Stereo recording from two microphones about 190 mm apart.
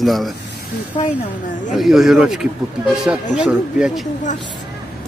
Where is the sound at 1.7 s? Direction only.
Centre (ahead or behind).